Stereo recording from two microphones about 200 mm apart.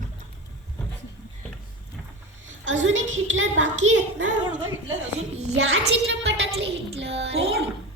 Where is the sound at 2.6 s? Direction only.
65° right (ahead or behind).